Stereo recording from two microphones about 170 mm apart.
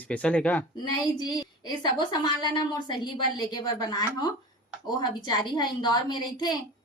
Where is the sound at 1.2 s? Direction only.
25° left (ahead or behind).